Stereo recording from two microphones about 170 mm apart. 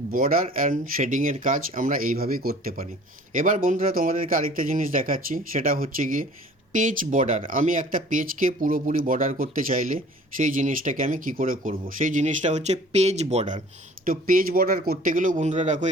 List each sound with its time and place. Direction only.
0.1 s speech: 55° right (ahead or behind)
14.0 s speech: 55° right (ahead or behind)